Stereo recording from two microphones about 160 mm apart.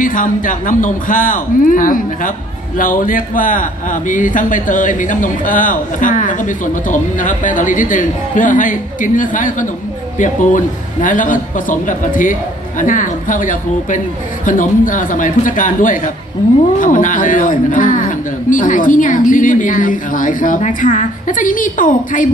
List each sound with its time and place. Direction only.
0.0 s speech: 55° left (ahead or behind)